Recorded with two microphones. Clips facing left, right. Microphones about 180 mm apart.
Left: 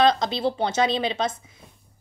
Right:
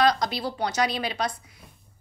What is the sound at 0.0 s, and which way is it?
Speech, 25° left (ahead or behind).